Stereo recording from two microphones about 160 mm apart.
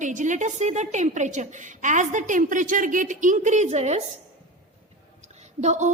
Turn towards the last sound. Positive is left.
turn(degrees=-45)  # may be behind; listen again after turning